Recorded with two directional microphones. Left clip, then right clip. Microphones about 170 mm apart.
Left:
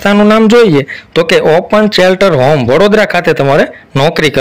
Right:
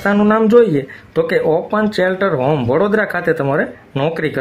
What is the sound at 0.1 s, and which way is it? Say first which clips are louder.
Speech: left 5 dB; 25° left (ahead or behind).